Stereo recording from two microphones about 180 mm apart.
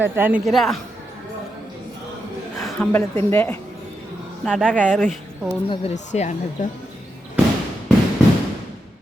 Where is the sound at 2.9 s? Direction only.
10° left (ahead or behind).